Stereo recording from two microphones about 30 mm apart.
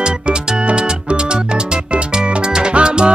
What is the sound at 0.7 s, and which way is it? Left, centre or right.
Music, right.